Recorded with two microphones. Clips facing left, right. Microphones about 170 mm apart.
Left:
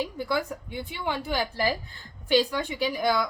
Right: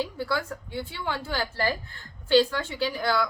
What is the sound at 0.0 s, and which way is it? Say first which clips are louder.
Speech: left 1 dB; 15° left (ahead or behind).